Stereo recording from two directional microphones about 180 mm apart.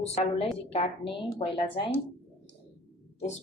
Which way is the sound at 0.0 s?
35° left (ahead or behind).